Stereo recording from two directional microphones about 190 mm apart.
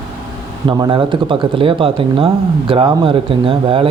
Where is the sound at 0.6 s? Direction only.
20° right (ahead or behind).